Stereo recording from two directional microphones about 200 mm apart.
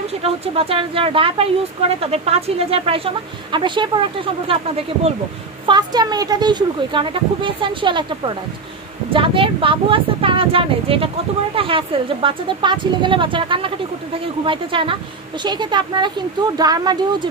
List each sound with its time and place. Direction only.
0.2 s speech: 30° right (ahead or behind)